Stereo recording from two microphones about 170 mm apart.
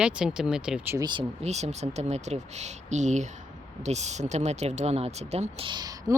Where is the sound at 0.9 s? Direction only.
25° right (ahead or behind).